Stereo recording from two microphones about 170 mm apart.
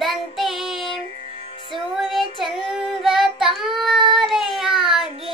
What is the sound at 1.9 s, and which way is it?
Child singing, centre (ahead or behind).